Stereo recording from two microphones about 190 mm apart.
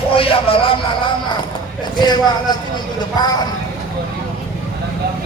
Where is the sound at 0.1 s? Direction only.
30° left (ahead or behind).